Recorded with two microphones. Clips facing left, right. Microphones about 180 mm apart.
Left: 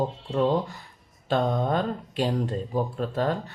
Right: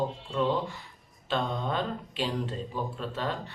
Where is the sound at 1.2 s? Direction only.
45° left (ahead or behind).